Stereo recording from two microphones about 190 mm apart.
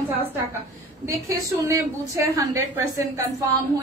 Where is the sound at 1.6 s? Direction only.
15° right (ahead or behind).